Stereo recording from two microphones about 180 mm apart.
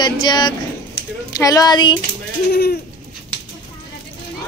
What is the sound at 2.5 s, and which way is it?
Bird, 60° left (ahead or behind).